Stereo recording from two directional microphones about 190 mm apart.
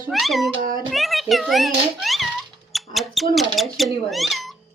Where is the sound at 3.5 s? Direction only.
Centre (ahead or behind).